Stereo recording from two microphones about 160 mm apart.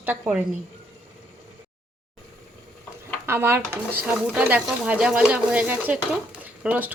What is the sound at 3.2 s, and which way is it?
Speech, 15° right (ahead or behind).